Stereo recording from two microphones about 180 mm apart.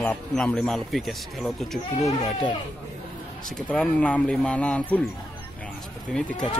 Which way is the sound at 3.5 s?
5° left (ahead or behind).